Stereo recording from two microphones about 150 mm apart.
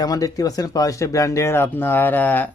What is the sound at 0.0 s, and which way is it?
Speech, 25° left (ahead or behind).